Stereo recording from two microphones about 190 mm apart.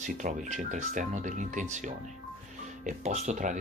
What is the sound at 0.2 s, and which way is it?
Speech, 40° right (ahead or behind).